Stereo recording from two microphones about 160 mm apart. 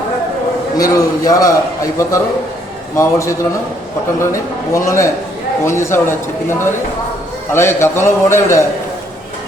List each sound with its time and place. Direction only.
0.8 s a man's voice: 20° left (ahead or behind)
2.9 s a man's voice: 20° left (ahead or behind)